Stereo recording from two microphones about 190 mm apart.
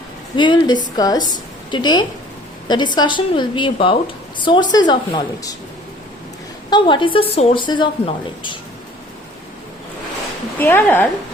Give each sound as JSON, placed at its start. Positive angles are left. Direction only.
{"t": 0.3, "sound": "a woman's voice", "side_deg": 25}
{"t": 6.7, "sound": "a woman's voice", "side_deg": 25}
{"t": 10.6, "sound": "a woman's voice", "side_deg": 10}